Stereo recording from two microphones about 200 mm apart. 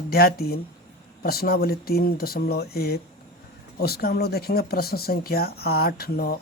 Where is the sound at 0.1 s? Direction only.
50° left (ahead or behind).